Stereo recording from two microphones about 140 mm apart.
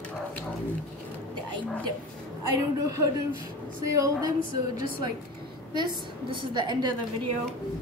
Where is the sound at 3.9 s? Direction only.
25° right (ahead or behind).